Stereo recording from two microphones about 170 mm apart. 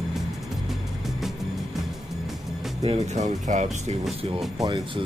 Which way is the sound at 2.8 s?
40° right (ahead or behind).